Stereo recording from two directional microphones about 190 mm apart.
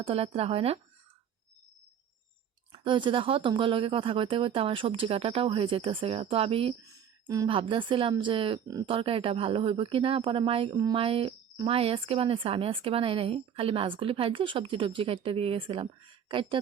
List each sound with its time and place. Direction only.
0.0 s speech: 30° right (ahead or behind)
2.7 s speech: 25° right (ahead or behind)